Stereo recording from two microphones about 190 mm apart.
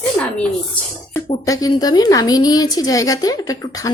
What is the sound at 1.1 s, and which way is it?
A woman's voice, 20° left (ahead or behind).